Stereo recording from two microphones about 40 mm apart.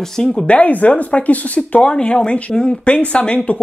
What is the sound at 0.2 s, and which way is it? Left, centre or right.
Speech, centre.